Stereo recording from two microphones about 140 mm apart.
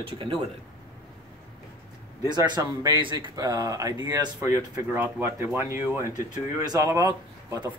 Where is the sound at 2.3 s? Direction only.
30° right (ahead or behind).